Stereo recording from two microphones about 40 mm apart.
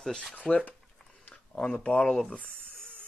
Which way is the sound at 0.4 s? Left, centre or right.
Left.